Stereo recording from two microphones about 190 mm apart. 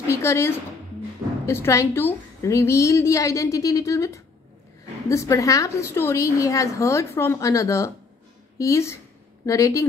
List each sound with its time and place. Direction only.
0.1 s a woman's voice: 15° left (ahead or behind)